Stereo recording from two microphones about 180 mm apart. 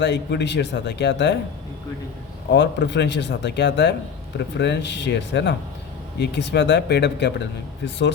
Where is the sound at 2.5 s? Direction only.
75° left (ahead or behind).